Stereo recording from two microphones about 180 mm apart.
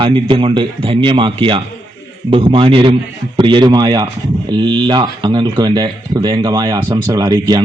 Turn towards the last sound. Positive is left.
turn(degrees=-20)  # may be behind; listen again after turning